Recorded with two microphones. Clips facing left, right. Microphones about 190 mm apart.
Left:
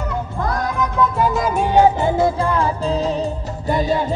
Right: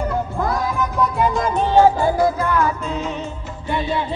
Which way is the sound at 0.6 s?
Centre (ahead or behind).